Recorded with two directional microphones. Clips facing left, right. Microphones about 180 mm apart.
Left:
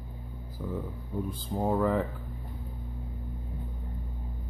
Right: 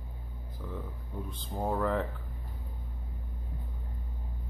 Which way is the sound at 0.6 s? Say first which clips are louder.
Left 6 dB; 10° left (ahead or behind).